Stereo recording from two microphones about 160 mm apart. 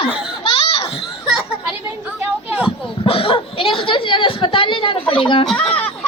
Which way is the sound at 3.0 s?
35° left (ahead or behind).